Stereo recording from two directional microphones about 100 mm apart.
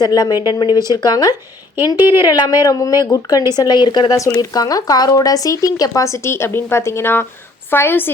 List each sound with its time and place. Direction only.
0.0 s speech: 40° left (ahead or behind)
4.4 s a woman's voice: 40° left (ahead or behind); by 8.1 s 20° left (ahead or behind)